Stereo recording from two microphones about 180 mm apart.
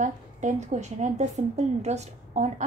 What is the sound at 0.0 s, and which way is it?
A woman's voice, 45° right (ahead or behind).